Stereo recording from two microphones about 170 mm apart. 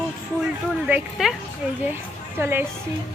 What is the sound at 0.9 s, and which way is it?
Speech, 10° right (ahead or behind).